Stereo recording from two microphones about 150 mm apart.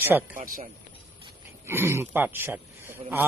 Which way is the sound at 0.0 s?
15° right (ahead or behind).